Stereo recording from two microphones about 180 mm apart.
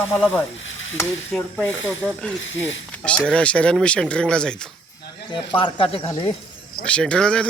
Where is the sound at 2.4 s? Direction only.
90° left.